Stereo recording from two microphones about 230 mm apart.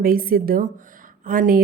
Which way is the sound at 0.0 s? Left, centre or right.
Right.